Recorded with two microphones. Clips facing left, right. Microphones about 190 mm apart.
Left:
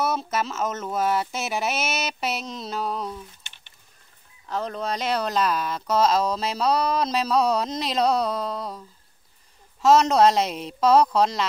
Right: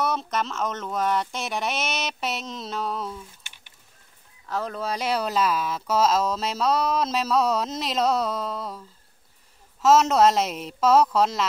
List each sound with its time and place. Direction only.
0.0 s speech: 5° left (ahead or behind)
4.5 s speech: centre (ahead or behind)